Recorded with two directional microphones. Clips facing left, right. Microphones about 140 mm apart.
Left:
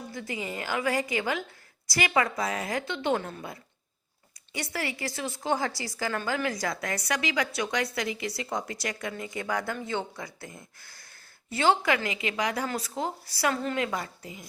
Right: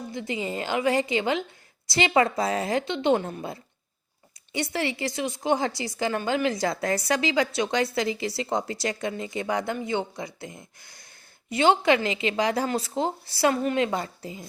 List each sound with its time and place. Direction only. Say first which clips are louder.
0.1 s a woman's voice: right 5 dB; 20° right (ahead or behind)